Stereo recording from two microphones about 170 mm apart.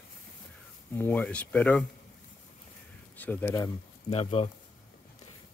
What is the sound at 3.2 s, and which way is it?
Speech, 10° left (ahead or behind).